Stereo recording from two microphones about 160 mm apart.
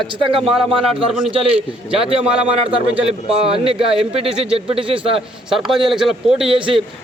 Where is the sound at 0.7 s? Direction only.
35° right (ahead or behind).